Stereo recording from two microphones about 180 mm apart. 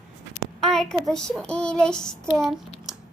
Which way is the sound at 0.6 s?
5° left (ahead or behind).